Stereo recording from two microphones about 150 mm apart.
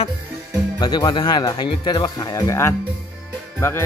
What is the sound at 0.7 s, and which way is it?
Speech, 30° left (ahead or behind).